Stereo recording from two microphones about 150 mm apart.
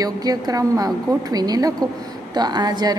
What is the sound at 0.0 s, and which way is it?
A woman's voice, 25° right (ahead or behind).